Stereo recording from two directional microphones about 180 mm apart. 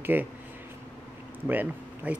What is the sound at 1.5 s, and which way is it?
Speech, 10° right (ahead or behind).